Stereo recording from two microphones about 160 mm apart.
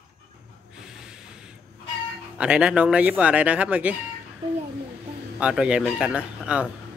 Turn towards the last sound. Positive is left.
turn(degrees=-5)  # may be behind; listen again after turning